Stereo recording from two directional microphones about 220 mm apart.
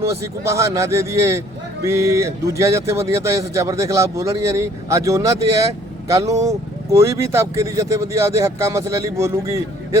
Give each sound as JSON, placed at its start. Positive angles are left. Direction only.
{"t": 0.0, "sound": "speech", "side_deg": -10}